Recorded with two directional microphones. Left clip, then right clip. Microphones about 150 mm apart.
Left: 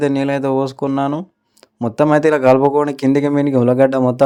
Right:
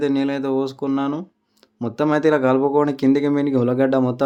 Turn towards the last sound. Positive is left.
turn(degrees=40)  # may be behind; listen again after turning